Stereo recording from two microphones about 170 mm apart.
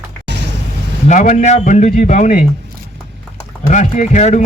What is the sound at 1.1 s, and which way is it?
A man's voice, 45° left (ahead or behind).